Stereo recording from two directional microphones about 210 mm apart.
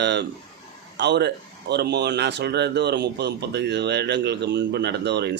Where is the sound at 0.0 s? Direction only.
55° right (ahead or behind).